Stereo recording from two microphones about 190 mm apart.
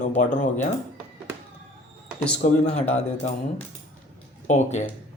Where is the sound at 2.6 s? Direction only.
35° left (ahead or behind).